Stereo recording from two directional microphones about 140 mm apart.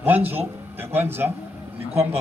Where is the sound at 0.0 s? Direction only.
15° right (ahead or behind).